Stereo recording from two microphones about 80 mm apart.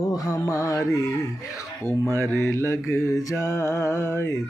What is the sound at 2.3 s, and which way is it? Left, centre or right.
Speech, left.